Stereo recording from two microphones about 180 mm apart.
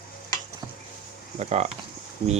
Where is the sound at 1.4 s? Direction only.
35° right (ahead or behind).